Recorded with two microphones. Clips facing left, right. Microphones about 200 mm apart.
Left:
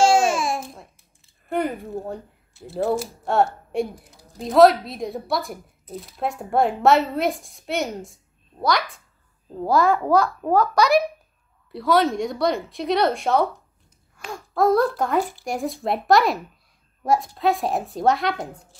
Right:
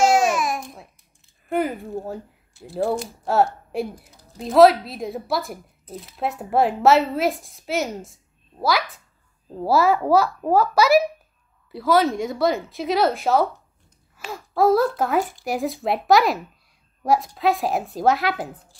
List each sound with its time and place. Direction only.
0.0 s babbling: 30° left (ahead or behind)
1.5 s speech: centre (ahead or behind)